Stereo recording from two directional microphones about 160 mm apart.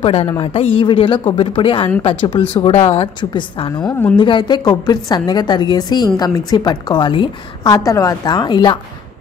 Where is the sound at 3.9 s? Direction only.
10° left (ahead or behind).